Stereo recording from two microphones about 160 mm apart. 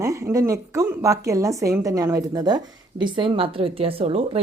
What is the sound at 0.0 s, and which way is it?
A woman's voice, 20° right (ahead or behind).